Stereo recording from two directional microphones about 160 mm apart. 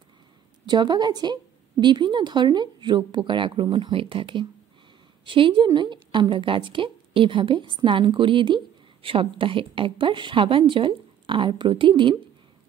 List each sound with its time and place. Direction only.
0.7 s a woman's voice: 25° right (ahead or behind)